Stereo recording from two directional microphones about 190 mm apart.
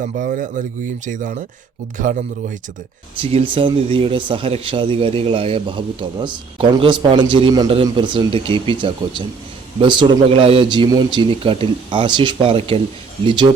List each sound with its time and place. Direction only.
0.0 s speech: 45° right (ahead or behind)
3.2 s a man's voice: 30° right (ahead or behind)